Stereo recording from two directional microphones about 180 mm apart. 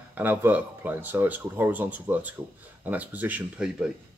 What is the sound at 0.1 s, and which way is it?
Speech, 10° right (ahead or behind).